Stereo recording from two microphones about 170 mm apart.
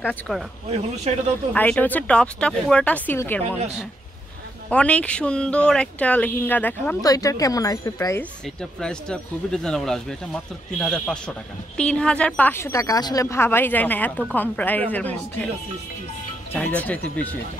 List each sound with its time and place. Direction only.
0.3 s speech: 5° left (ahead or behind)
1.5 s speech: 10° left (ahead or behind)
3.4 s speech: 35° right (ahead or behind)
4.6 s speech: 5° left (ahead or behind)
7.0 s speech: 20° left (ahead or behind)
8.5 s speech: 5° left (ahead or behind)
16.5 s speech: 10° left (ahead or behind)